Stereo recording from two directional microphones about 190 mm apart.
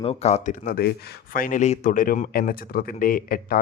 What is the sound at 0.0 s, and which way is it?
Speech, 30° left (ahead or behind).